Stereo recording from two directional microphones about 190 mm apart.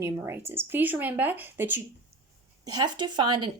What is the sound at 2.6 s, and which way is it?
Speech, 20° right (ahead or behind).